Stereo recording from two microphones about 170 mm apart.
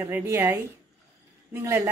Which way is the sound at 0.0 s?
15° right (ahead or behind).